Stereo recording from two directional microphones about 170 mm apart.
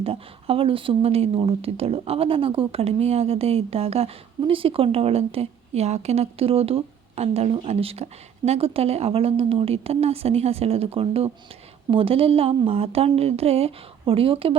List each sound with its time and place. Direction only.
0.0 s speech: 35° right (ahead or behind)